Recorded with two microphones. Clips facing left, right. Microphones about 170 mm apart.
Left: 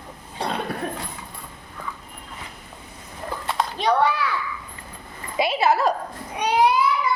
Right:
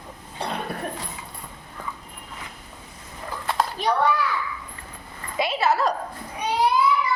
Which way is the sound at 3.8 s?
90° left.